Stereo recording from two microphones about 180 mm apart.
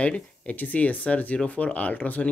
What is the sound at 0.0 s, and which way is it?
Speech, 5° left (ahead or behind).